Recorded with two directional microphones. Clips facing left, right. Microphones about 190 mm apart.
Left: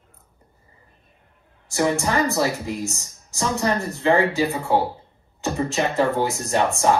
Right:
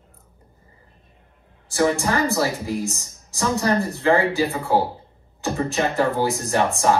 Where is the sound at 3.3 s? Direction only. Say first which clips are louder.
Right 2 dB; 15° left (ahead or behind).